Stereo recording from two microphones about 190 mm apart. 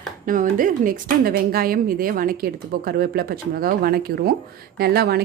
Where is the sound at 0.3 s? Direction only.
45° right (ahead or behind).